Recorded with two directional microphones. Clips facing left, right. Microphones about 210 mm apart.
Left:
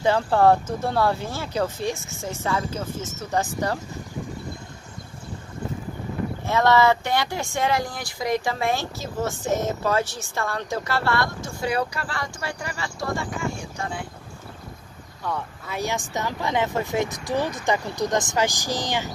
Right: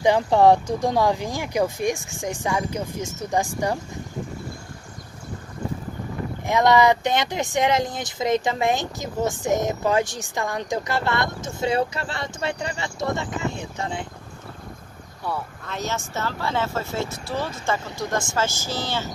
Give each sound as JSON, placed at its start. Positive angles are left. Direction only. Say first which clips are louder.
{"t": 0.0, "sound": "speech", "louder": "right 2 dB", "side_deg": -15}
{"t": 6.4, "sound": "speech", "louder": "right 1 dB", "side_deg": -15}
{"t": 15.6, "sound": "speech", "louder": "left 4 dB", "side_deg": 10}